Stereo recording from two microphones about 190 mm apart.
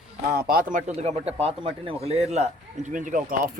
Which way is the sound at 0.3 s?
50° right (ahead or behind).